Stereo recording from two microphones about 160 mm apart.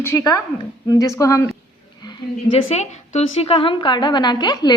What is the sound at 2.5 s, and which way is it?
A woman's voice, 45° left (ahead or behind).